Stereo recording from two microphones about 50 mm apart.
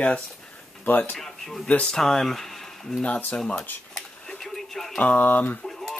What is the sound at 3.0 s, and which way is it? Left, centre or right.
Speech, left.